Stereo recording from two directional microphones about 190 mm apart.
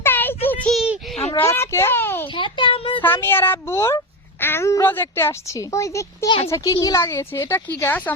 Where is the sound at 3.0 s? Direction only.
10° left (ahead or behind).